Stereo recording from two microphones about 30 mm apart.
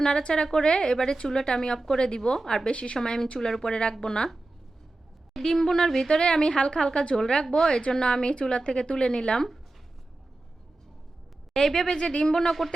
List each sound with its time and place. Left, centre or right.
0.0 s a woman's voice: left
2.6 s a woman's voice: left
3.0 s a woman's voice: left
5.3 s a woman's voice: centre; by 9.5 s left
11.5 s speech: centre
11.9 s a woman's voice: left